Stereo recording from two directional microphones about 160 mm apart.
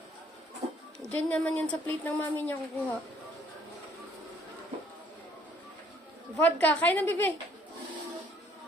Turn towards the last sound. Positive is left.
turn(degrees=15)  # may be behind; listen again after turning